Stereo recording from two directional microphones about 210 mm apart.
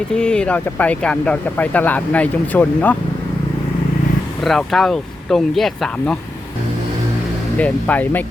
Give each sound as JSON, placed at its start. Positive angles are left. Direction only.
{"t": 0.1, "sound": "speech", "side_deg": 5}
{"t": 4.4, "sound": "speech", "side_deg": 0}
{"t": 7.6, "sound": "speech", "side_deg": 5}